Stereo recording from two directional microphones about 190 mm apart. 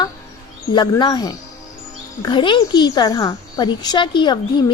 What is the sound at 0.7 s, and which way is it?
Speech, 20° left (ahead or behind).